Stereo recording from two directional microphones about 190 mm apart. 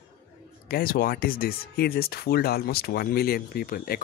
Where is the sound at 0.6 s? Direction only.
50° left (ahead or behind).